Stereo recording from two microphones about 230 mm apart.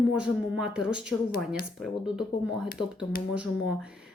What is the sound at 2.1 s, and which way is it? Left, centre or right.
A woman's voice, centre.